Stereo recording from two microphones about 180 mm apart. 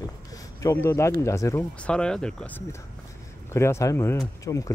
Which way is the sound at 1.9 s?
5° left (ahead or behind).